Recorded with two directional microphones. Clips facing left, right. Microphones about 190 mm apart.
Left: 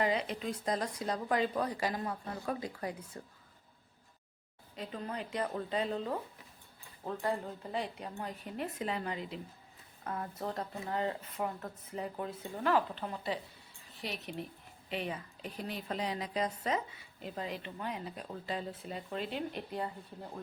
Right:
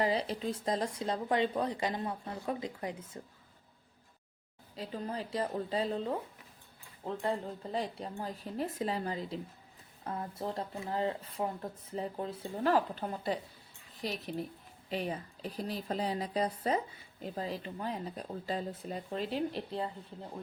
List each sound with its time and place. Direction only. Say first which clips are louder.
0.0 s speech: right 1 dB; 35° right (ahead or behind)
4.8 s speech: right 2 dB; 30° right (ahead or behind)
10.0 s speech: right 1 dB; 25° right (ahead or behind)